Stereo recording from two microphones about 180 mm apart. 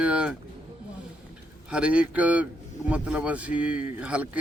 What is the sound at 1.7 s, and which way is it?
Speech, 5° right (ahead or behind).